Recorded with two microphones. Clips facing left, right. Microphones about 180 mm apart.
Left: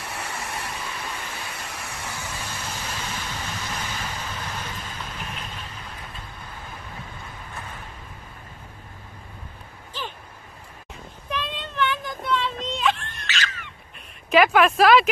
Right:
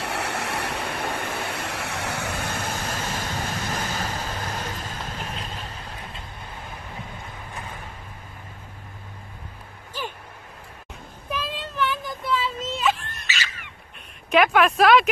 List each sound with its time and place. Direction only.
0.0 s a sound: 70° right (ahead or behind); by 5.4 s 40° right (ahead or behind)
11.2 s child singing: 5° right (ahead or behind)
14.3 s speech: centre (ahead or behind)